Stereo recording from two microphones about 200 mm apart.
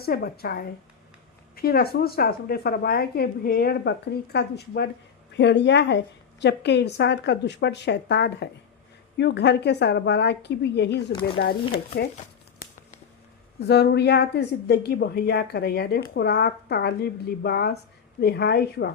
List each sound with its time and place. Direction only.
0.0 s a woman's voice: 50° left (ahead or behind)
13.6 s a woman's voice: 55° left (ahead or behind)